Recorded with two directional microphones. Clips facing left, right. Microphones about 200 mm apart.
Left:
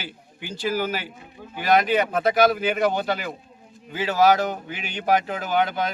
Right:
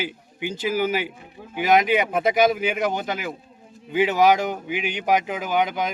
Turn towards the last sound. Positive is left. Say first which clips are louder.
# even
turn(degrees=-15)  # may be behind; listen again after turning